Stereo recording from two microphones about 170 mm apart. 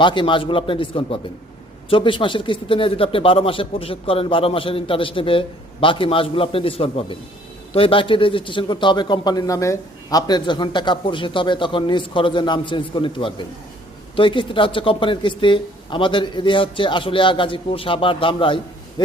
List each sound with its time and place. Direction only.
0.0 s a man's voice: 30° left (ahead or behind)